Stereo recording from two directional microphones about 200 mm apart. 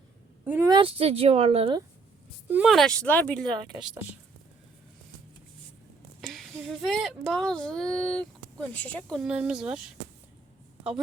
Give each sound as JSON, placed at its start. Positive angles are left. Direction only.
{"t": 0.4, "sound": "a woman's voice", "side_deg": -10}
{"t": 0.7, "sound": "speech", "side_deg": -25}
{"t": 2.5, "sound": "speech", "side_deg": -5}
{"t": 3.5, "sound": "speech", "side_deg": -20}
{"t": 6.2, "sound": "speech", "side_deg": 0}